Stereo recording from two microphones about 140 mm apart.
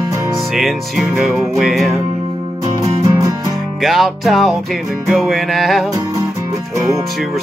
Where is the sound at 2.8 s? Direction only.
25° right (ahead or behind).